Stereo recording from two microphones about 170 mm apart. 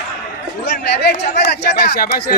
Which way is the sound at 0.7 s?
80° left.